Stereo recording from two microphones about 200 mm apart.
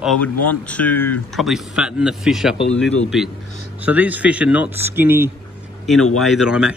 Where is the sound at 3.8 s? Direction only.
10° right (ahead or behind).